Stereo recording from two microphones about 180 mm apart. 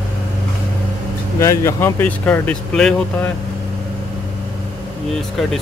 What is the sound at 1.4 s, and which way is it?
Speech, 15° left (ahead or behind).